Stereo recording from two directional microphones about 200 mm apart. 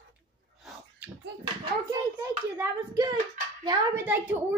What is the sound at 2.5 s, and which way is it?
A child's voice, 20° right (ahead or behind).